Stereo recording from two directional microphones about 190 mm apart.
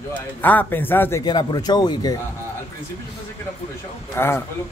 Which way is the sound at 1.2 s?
20° left (ahead or behind).